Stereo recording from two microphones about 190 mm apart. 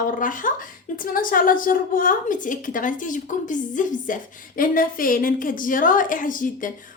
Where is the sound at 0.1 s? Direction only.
45° left (ahead or behind).